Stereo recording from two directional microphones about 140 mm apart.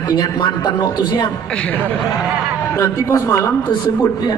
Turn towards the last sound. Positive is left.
turn(degrees=15)  # may be behind; listen again after turning